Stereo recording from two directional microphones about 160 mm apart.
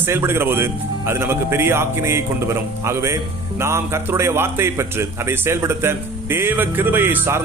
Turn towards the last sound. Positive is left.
turn(degrees=-15)  # may be behind; listen again after turning